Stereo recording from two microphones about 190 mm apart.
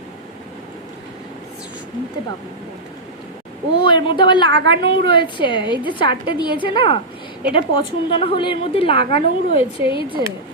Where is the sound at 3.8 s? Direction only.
25° left (ahead or behind).